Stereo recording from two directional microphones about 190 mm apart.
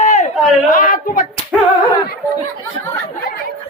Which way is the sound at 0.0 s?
40° left (ahead or behind).